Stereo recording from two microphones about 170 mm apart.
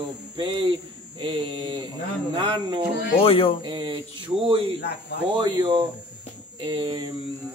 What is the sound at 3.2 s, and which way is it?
Speech, 35° left (ahead or behind).